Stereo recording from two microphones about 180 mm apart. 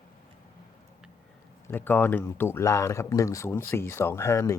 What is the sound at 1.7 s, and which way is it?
Speech, 10° left (ahead or behind).